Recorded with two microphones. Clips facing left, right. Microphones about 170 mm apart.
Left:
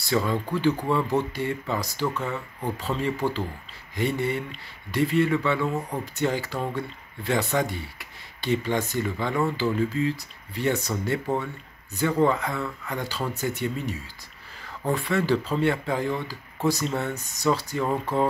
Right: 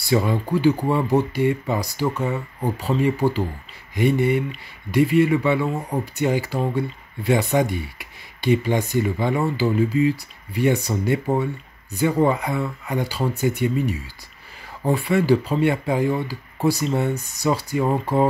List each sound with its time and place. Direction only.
0.0 s speech: 15° right (ahead or behind)